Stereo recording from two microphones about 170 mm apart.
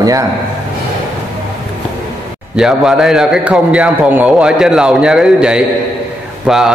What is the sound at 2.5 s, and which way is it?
A man's voice, 5° right (ahead or behind).